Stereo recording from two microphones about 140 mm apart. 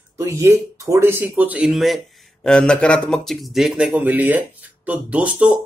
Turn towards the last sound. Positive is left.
turn(degrees=-10)  # may be behind; listen again after turning